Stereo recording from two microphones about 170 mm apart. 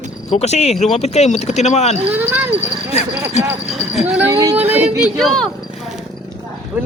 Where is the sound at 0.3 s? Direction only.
40° left (ahead or behind).